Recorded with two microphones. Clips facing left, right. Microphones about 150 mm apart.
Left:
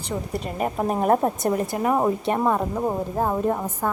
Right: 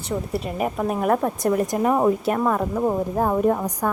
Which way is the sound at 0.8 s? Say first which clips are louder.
Left 2 dB; 35° left (ahead or behind).